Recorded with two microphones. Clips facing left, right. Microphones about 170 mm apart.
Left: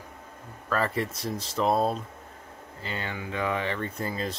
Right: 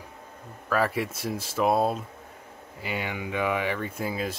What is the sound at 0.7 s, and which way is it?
Speech, 5° right (ahead or behind).